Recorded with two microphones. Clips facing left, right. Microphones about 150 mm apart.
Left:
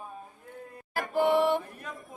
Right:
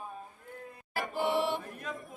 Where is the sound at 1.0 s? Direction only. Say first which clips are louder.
Left 6 dB; 50° left (ahead or behind).